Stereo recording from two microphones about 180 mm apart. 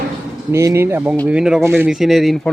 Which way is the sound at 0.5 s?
15° right (ahead or behind).